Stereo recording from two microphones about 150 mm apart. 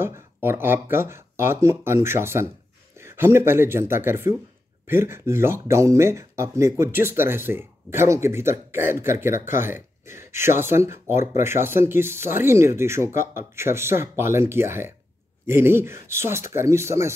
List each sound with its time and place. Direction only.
0.0 s speech: 15° right (ahead or behind)